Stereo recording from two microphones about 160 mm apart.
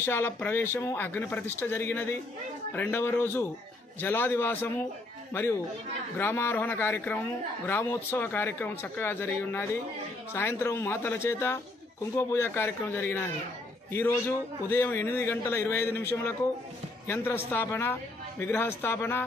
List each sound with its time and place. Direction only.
0.0 s speech: 15° left (ahead or behind)